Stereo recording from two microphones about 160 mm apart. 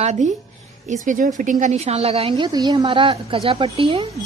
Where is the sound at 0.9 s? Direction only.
55° right (ahead or behind).